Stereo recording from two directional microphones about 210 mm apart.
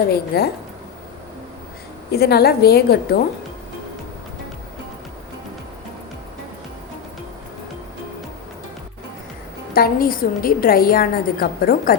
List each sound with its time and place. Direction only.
0.1 s a woman's voice: 50° left (ahead or behind)
2.1 s a woman's voice: 50° left (ahead or behind)
9.7 s a woman's voice: 45° left (ahead or behind)